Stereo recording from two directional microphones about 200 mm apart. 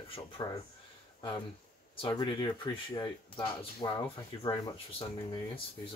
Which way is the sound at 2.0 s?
25° left (ahead or behind).